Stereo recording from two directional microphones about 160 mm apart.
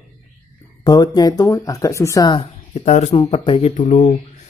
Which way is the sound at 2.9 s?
45° left (ahead or behind).